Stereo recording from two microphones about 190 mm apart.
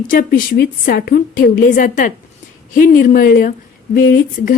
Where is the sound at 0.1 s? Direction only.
45° left (ahead or behind).